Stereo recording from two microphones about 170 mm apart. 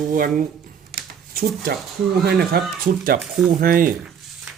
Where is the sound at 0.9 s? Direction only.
60° right (ahead or behind).